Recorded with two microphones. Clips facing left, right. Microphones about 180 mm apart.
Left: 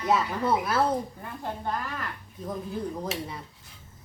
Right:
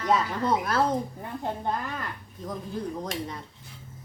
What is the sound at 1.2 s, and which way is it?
Speech, 20° right (ahead or behind).